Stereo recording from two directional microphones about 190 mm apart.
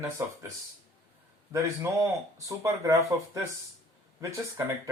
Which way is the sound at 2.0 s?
15° right (ahead or behind).